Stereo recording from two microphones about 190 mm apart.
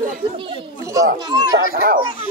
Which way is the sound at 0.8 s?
15° right (ahead or behind).